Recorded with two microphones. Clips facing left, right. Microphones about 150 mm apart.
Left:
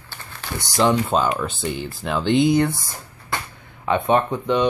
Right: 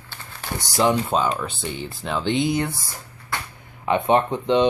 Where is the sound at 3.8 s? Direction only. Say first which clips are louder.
Even; 20° right (ahead or behind).